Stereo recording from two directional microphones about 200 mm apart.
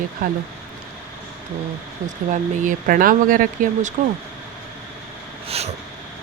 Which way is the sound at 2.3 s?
40° right (ahead or behind).